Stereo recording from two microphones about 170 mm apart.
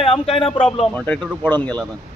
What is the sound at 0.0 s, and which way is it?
Speech, 35° left (ahead or behind).